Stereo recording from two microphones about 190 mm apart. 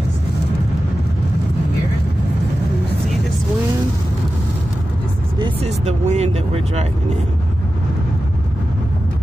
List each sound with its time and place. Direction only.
5.4 s vehicle: 35° right (ahead or behind)